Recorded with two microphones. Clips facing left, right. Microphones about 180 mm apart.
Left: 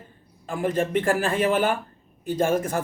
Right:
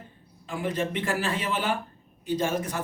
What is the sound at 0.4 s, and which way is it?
A man's voice, 50° left (ahead or behind).